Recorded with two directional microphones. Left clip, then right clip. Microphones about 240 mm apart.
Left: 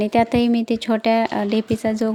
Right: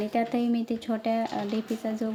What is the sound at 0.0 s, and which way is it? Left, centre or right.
A woman's voice, left.